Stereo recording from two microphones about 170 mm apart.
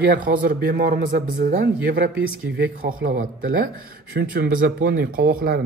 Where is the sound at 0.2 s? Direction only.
60° right (ahead or behind).